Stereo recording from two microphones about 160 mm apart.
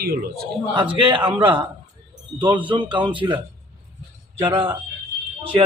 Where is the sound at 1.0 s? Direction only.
30° right (ahead or behind).